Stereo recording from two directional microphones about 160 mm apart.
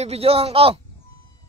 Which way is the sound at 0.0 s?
40° right (ahead or behind).